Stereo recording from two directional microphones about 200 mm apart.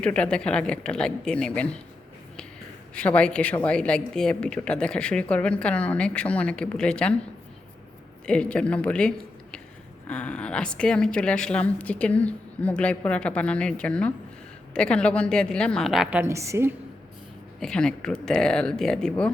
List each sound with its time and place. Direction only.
0.0 s a woman's voice: 5° left (ahead or behind)
2.9 s a woman's voice: 5° left (ahead or behind)
8.3 s a woman's voice: 5° left (ahead or behind); by 16.7 s 15° right (ahead or behind)
17.6 s a woman's voice: 5° left (ahead or behind)